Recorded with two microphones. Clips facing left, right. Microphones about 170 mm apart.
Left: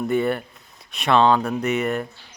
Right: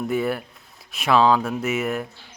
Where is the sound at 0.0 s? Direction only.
Centre (ahead or behind).